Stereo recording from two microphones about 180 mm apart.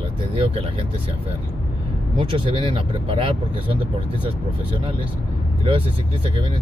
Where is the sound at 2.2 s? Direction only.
30° right (ahead or behind).